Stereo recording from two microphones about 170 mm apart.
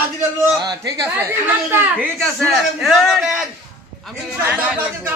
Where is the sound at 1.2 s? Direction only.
15° right (ahead or behind).